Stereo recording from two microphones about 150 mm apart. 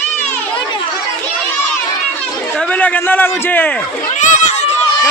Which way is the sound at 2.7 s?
10° left (ahead or behind).